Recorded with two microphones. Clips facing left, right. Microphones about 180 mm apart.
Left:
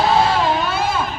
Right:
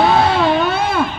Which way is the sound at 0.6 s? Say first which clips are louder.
Right 4 dB; 60° right (ahead or behind).